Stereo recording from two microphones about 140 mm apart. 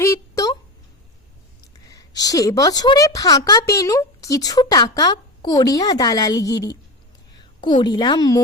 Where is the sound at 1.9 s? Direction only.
25° left (ahead or behind).